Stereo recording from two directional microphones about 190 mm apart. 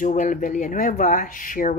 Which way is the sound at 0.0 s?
45° left (ahead or behind).